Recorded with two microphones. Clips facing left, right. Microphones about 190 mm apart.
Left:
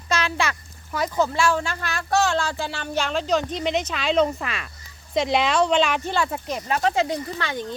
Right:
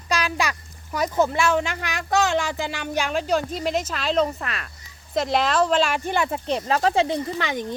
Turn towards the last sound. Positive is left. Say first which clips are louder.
# right 2 dB
turn(degrees=-15)  # may be behind; listen again after turning